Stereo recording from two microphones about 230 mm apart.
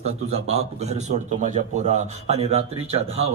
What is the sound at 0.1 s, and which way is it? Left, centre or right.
Speech, right.